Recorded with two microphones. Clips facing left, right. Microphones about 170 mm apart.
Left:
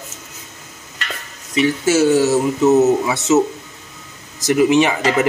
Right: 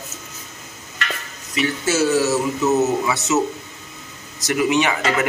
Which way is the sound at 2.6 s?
25° left (ahead or behind).